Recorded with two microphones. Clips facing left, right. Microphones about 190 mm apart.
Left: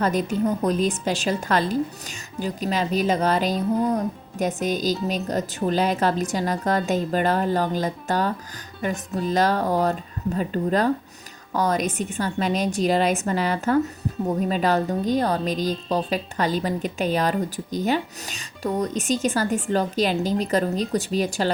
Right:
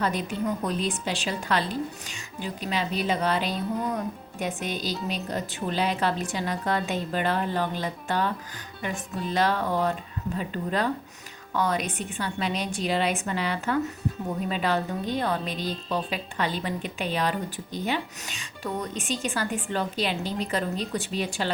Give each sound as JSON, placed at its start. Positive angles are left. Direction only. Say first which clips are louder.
{"t": 0.0, "sound": "a woman's voice", "louder": "left 5 dB", "side_deg": 45}